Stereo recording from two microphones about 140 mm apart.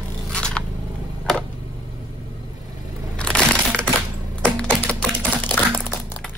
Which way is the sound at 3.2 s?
5° left (ahead or behind).